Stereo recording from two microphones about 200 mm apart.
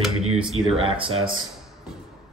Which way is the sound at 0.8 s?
30° right (ahead or behind).